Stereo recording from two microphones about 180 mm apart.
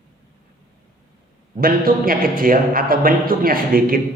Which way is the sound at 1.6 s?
55° right (ahead or behind).